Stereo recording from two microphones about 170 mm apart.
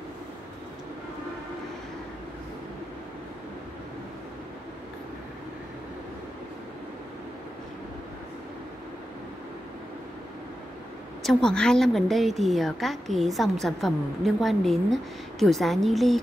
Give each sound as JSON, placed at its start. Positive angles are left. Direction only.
{"t": 11.2, "sound": "a woman's voice", "side_deg": 5}